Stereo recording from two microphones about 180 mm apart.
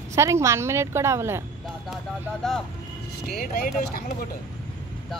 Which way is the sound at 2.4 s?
Centre (ahead or behind).